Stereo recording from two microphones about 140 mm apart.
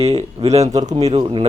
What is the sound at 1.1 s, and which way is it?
Speech, 40° right (ahead or behind).